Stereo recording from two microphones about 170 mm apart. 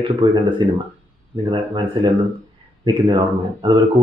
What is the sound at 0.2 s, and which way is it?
Speech, 30° right (ahead or behind).